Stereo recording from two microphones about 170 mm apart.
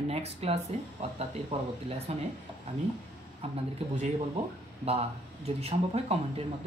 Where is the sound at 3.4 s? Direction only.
35° right (ahead or behind).